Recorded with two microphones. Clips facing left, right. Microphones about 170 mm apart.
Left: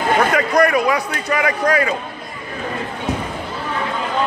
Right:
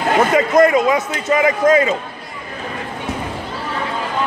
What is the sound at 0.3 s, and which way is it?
Speech, 20° right (ahead or behind).